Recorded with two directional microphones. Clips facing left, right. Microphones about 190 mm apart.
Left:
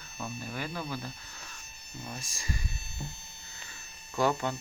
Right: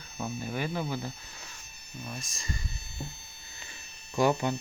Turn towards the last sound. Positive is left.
turn(degrees=-15)  # may be behind; listen again after turning